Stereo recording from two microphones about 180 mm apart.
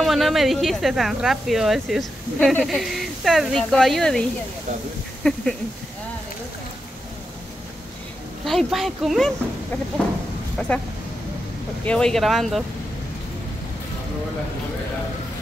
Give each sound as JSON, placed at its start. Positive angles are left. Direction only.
{"t": 0.0, "sound": "speech", "side_deg": 0}
{"t": 5.2, "sound": "a sound", "side_deg": 5}
{"t": 8.5, "sound": "speech", "side_deg": 0}
{"t": 11.8, "sound": "speech", "side_deg": 5}